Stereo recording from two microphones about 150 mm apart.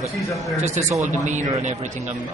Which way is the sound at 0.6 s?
50° right (ahead or behind).